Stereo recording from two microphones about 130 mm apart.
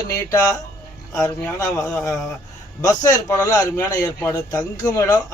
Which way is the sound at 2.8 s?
25° left (ahead or behind).